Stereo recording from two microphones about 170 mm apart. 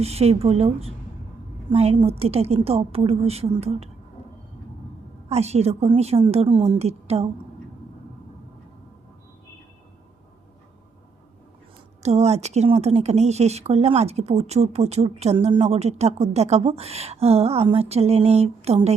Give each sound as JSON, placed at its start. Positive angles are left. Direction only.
{"t": 0.0, "sound": "speech", "side_deg": -35}
{"t": 5.3, "sound": "speech", "side_deg": -40}
{"t": 12.0, "sound": "speech", "side_deg": -40}